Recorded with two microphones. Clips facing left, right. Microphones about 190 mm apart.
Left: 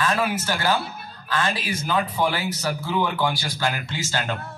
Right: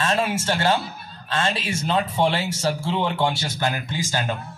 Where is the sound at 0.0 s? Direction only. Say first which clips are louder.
Right 1 dB; 25° right (ahead or behind).